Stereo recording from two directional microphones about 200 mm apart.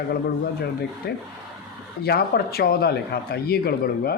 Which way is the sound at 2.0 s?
50° left (ahead or behind).